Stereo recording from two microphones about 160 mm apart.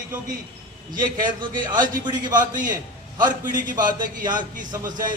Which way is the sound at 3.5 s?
55° right (ahead or behind).